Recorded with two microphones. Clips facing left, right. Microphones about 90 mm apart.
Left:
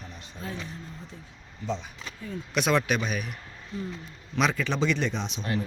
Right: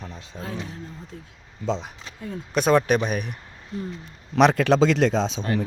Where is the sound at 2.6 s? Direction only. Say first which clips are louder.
Right 6 dB; 40° right (ahead or behind).